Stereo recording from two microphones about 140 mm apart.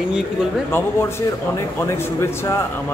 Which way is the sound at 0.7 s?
15° left (ahead or behind).